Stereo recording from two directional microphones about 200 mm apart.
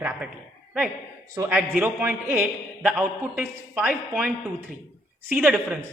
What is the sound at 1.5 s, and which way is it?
A woman's voice, 5° right (ahead or behind).